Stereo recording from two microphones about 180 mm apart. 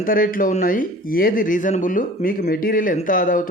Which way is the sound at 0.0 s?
50° left (ahead or behind).